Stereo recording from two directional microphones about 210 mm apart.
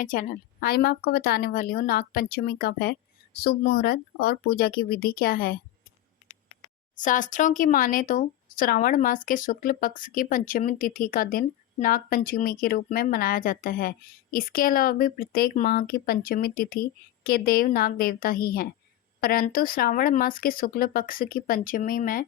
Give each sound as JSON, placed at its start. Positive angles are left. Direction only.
{"t": 0.0, "sound": "speech", "side_deg": 40}
{"t": 6.9, "sound": "speech", "side_deg": 40}